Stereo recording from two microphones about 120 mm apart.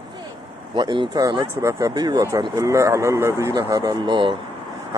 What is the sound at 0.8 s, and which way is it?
Speech, 40° right (ahead or behind).